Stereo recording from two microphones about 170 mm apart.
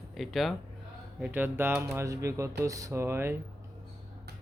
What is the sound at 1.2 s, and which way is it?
Speech, 10° right (ahead or behind).